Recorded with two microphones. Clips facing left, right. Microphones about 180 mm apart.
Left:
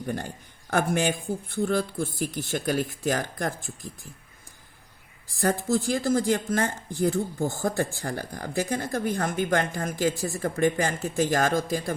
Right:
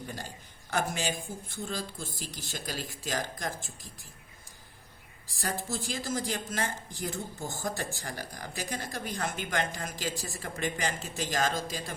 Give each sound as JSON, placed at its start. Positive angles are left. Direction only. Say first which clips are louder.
{"t": 0.7, "sound": "speech", "louder": "left 7 dB", "side_deg": 60}
{"t": 5.4, "sound": "speech", "louder": "left 10 dB", "side_deg": 60}